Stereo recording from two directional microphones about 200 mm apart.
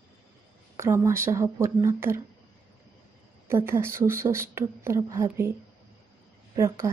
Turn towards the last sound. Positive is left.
turn(degrees=-15)  # may be behind; listen again after turning